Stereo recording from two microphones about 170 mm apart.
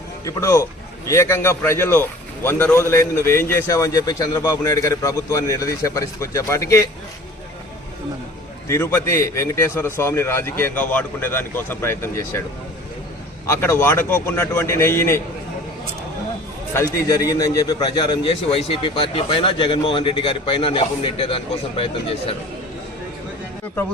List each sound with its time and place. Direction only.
0.3 s a man's voice: 15° left (ahead or behind)
8.6 s a man's voice: 15° left (ahead or behind)
13.5 s a man's voice: 15° left (ahead or behind)
16.7 s a man's voice: 20° left (ahead or behind)